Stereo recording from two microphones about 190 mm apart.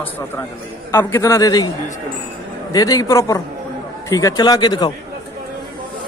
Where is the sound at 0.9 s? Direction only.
15° left (ahead or behind).